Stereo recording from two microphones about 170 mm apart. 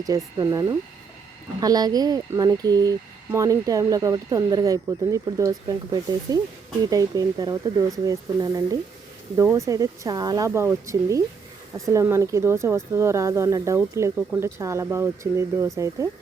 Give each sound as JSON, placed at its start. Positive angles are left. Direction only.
{"t": 0.0, "sound": "speech", "side_deg": -20}